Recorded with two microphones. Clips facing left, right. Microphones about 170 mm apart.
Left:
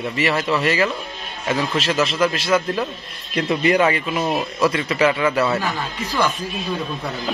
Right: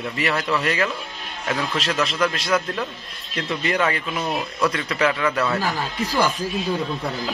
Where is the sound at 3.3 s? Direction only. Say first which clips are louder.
Left 6 dB; 15° left (ahead or behind).